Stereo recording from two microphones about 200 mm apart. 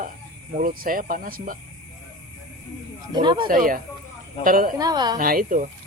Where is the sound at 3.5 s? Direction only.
45° right (ahead or behind).